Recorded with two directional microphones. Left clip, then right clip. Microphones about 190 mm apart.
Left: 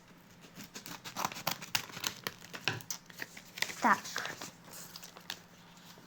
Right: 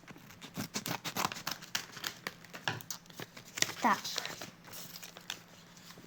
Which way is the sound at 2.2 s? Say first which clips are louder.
Left 1 dB; 30° left (ahead or behind).